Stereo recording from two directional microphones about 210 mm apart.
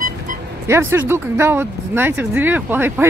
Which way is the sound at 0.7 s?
10° right (ahead or behind).